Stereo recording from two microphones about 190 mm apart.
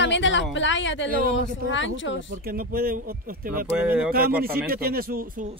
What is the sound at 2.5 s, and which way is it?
Speech, 50° right (ahead or behind).